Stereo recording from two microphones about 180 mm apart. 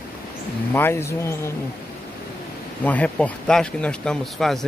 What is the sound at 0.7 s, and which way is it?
Speech, 15° left (ahead or behind).